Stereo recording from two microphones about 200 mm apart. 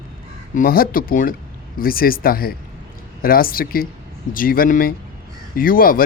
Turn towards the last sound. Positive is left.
turn(degrees=45)  # may be behind; listen again after turning